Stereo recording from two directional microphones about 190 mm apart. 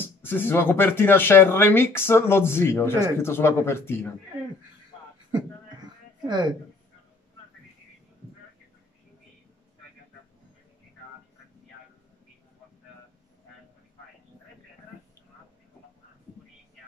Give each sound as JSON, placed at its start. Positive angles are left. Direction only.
{"t": 0.0, "sound": "speech", "side_deg": 10}
{"t": 6.2, "sound": "a woman's voice", "side_deg": -20}